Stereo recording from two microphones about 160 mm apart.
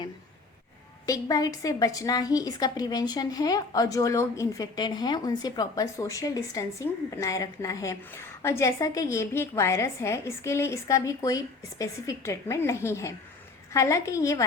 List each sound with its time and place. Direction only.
1.0 s a woman's voice: 20° left (ahead or behind)